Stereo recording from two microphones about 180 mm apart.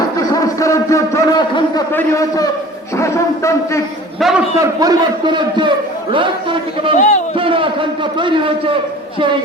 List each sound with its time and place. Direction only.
0.2 s a sound: 20° left (ahead or behind)
1.9 s speech: 15° left (ahead or behind)
4.2 s a man's voice: centre (ahead or behind)
4.6 s a man's voice: 20° right (ahead or behind)
6.9 s a man's voice: 40° left (ahead or behind)
7.3 s a man's voice: 30° right (ahead or behind)